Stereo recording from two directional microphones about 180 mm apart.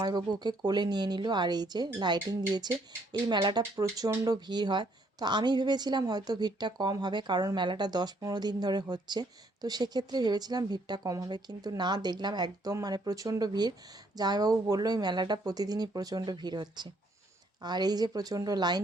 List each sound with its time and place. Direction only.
0.0 s speech: 25° right (ahead or behind)